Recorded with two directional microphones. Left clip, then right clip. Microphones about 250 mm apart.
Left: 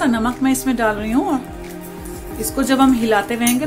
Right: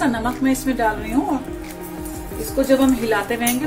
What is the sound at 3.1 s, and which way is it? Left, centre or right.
Speech, left.